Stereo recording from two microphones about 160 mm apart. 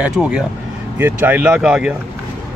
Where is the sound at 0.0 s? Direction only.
5° right (ahead or behind).